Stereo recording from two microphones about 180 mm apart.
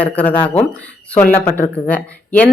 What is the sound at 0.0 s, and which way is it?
Speech, 10° left (ahead or behind).